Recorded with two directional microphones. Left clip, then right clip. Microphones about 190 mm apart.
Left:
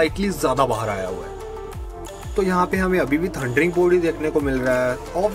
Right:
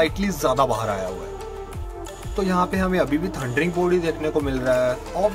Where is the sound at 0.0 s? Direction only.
10° left (ahead or behind).